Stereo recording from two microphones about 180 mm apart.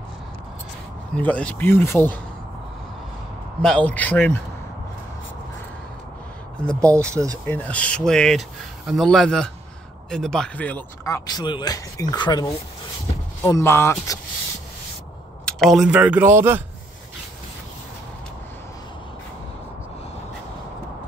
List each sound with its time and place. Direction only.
1.1 s speech: 5° left (ahead or behind)
3.6 s speech: 5° left (ahead or behind)
6.8 s speech: 15° right (ahead or behind)
7.4 s speech: 10° left (ahead or behind)
15.4 s speech: centre (ahead or behind)